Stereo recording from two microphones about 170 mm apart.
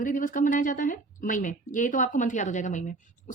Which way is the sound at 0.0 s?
50° left (ahead or behind).